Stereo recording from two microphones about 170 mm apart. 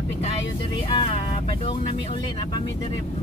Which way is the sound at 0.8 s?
30° left (ahead or behind).